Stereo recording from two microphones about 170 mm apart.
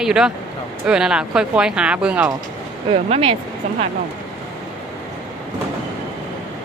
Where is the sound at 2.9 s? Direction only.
35° right (ahead or behind).